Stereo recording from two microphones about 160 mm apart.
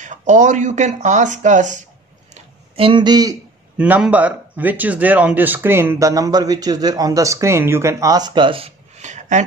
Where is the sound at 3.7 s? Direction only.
5° right (ahead or behind).